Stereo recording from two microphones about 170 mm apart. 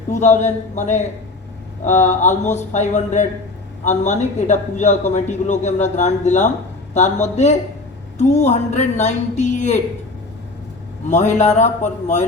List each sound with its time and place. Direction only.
0.1 s a man's voice: 45° left (ahead or behind)
11.1 s a man's voice: 45° left (ahead or behind)